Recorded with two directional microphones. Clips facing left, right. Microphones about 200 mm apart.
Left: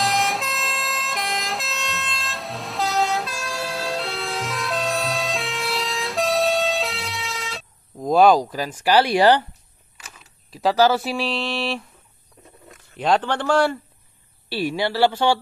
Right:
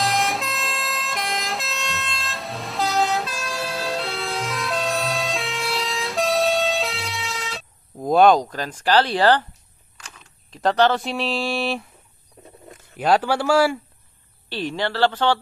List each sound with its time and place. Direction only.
0.0 s emergency vehicle: centre (ahead or behind)
9.9 s speech: 5° left (ahead or behind)
12.9 s a man's voice: 5° right (ahead or behind)
14.5 s speech: 10° left (ahead or behind)